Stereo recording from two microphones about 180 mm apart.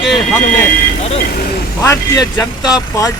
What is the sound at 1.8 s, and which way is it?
Speech, 20° left (ahead or behind).